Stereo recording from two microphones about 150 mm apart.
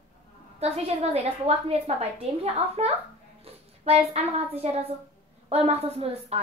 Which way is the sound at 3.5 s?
40° right (ahead or behind).